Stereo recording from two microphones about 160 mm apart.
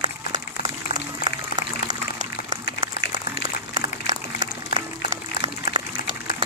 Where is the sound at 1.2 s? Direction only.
30° right (ahead or behind).